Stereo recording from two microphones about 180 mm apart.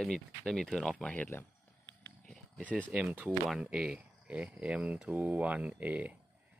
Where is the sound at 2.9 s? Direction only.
10° right (ahead or behind).